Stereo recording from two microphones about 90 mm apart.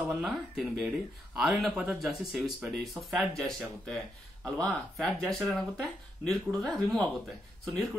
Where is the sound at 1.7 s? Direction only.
15° right (ahead or behind).